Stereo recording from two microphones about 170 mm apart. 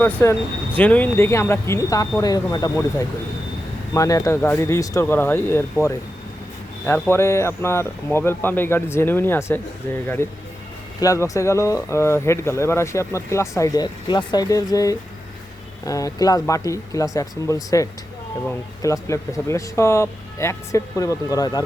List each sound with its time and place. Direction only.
0.0 s speech: 10° left (ahead or behind)
3.9 s speech: 20° left (ahead or behind)
7.1 s speech: 15° left (ahead or behind)